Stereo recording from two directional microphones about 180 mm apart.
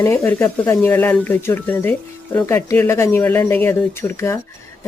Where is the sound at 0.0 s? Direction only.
15° left (ahead or behind).